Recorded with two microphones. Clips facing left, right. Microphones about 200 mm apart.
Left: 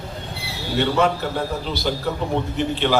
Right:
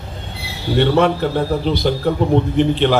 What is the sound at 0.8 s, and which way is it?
A man's voice, 55° right (ahead or behind).